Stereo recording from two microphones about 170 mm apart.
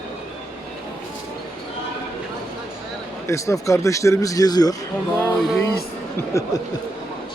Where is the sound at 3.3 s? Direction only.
20° left (ahead or behind).